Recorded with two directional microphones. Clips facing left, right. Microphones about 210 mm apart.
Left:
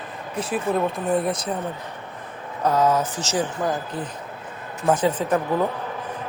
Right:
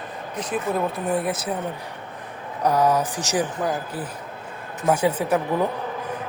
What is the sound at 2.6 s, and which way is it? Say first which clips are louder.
Speech: even; 10° right (ahead or behind).